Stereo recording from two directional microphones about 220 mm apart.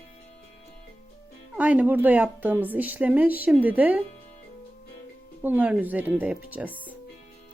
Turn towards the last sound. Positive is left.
turn(degrees=-5)  # may be behind; listen again after turning